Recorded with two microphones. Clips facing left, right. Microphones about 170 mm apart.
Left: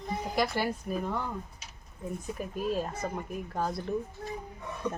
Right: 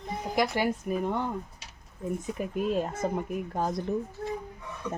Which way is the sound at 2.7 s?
20° right (ahead or behind).